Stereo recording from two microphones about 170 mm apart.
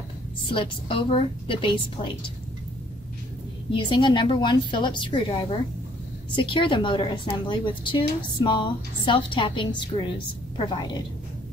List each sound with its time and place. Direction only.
0.4 s a woman's voice: 30° left (ahead or behind)
3.7 s a woman's voice: 30° left (ahead or behind)